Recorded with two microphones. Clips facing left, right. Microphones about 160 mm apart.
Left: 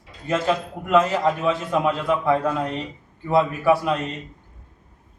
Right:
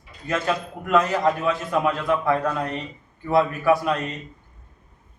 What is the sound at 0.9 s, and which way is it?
Speech, 25° left (ahead or behind).